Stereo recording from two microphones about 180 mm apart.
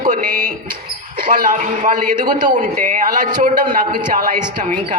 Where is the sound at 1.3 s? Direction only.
45° right (ahead or behind).